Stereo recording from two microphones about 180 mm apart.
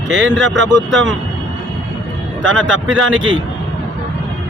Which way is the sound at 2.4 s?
90° right.